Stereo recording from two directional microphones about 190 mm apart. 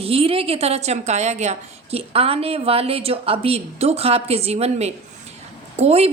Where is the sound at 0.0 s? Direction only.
30° right (ahead or behind).